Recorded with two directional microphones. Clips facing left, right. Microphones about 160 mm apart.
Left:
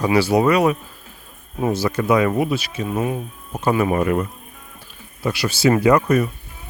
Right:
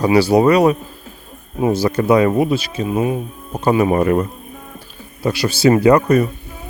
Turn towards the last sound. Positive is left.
turn(degrees=-35)  # may be behind; listen again after turning